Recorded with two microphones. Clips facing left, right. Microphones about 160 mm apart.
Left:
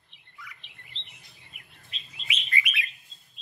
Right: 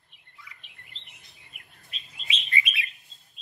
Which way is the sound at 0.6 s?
45° right (ahead or behind).